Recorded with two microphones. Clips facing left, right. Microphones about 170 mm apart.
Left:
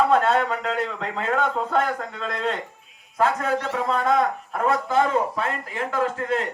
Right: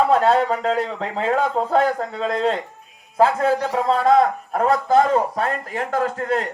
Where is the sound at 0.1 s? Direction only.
35° right (ahead or behind).